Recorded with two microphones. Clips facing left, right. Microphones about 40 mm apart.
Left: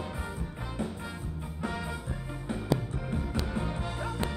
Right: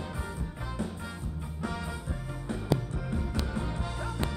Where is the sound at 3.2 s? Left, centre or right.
Centre.